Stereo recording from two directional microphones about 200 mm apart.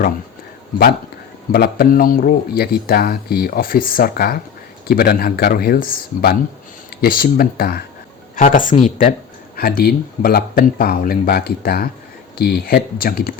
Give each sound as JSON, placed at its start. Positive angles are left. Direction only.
{"t": 1.5, "sound": "speech", "side_deg": 50}
{"t": 9.6, "sound": "speech", "side_deg": 50}